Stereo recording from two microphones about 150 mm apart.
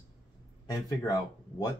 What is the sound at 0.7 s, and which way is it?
Speech, 25° left (ahead or behind).